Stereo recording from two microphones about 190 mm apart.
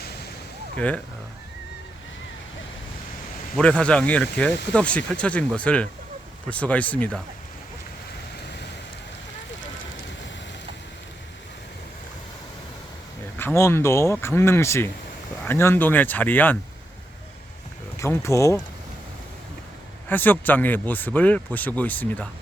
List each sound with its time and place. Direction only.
0.8 s speech: 5° left (ahead or behind)
3.6 s speech: 5° left (ahead or behind)
13.4 s speech: 10° left (ahead or behind)
17.9 s speech: 15° left (ahead or behind)
20.1 s speech: 10° left (ahead or behind)